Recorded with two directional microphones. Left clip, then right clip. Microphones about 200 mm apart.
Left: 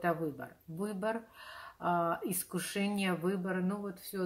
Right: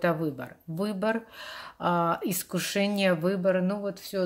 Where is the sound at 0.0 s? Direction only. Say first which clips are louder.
Right 6 dB; 40° right (ahead or behind).